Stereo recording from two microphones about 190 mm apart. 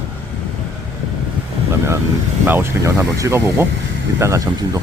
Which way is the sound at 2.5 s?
10° right (ahead or behind).